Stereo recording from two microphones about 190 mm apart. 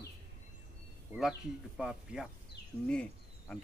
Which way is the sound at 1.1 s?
Centre (ahead or behind).